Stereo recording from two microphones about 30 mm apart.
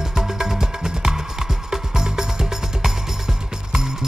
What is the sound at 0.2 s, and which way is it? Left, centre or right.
Music, centre.